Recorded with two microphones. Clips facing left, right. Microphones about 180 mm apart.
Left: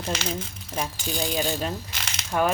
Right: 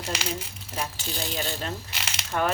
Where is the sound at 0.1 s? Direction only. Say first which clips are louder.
Left 3 dB; 10° right (ahead or behind).